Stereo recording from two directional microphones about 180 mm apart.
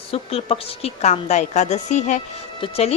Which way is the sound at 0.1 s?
35° left (ahead or behind).